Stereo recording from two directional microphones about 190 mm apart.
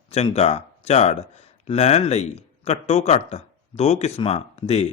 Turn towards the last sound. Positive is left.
turn(degrees=35)  # may be behind; listen again after turning